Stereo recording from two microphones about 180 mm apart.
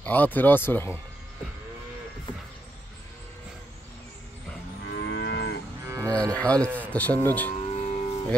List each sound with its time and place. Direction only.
0.0 s speech: 10° left (ahead or behind)
4.8 s livestock: 80° left
5.9 s cattle: 15° right (ahead or behind)
6.3 s speech: 5° left (ahead or behind)
7.5 s music: 35° left (ahead or behind)